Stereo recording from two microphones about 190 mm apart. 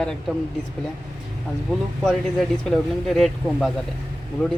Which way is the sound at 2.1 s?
Centre (ahead or behind).